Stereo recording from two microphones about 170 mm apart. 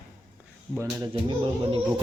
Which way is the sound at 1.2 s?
30° right (ahead or behind).